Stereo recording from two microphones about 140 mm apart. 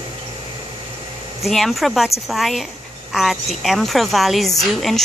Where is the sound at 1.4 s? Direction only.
Centre (ahead or behind).